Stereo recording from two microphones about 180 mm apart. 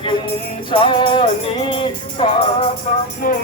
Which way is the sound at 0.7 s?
30° left (ahead or behind).